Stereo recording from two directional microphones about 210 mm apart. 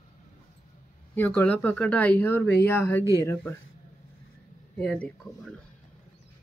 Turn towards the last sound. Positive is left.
turn(degrees=5)  # may be behind; listen again after turning